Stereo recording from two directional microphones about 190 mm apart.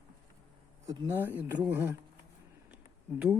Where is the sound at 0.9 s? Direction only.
10° right (ahead or behind).